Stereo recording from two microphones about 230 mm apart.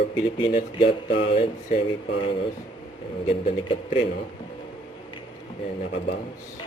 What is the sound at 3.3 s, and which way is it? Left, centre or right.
Speech, left.